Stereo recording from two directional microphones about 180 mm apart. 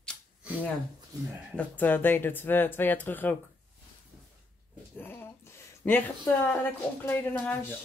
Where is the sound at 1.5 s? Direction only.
10° left (ahead or behind).